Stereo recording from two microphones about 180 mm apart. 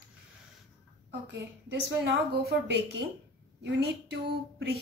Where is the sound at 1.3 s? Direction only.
75° right (ahead or behind).